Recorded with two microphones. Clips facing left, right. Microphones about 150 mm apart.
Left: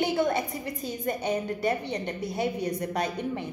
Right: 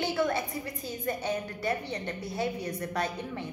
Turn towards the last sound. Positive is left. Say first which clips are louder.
# left 3 dB
turn(degrees=20)  # may be behind; listen again after turning